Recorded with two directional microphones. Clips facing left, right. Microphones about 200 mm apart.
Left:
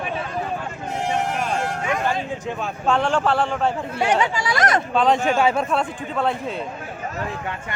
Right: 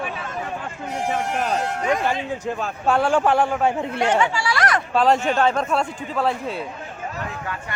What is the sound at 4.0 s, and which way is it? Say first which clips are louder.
Speech: left 1 dB; 15° left (ahead or behind).